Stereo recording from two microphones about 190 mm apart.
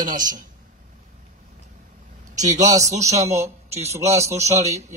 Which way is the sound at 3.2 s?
35° right (ahead or behind).